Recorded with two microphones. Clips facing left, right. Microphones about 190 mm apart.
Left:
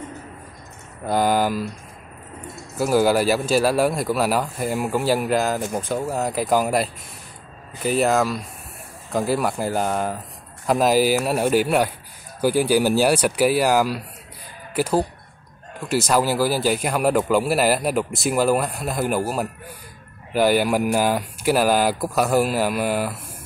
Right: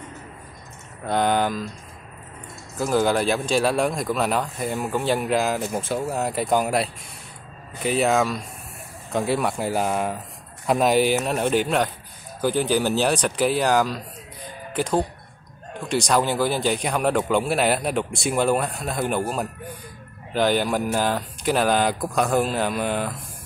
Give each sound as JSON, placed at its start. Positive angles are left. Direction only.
{"t": 1.0, "sound": "a man's voice", "side_deg": 5}
{"t": 2.8, "sound": "a man's voice", "side_deg": 5}